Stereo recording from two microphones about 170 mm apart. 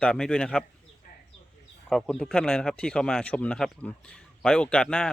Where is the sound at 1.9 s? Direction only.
5° left (ahead or behind).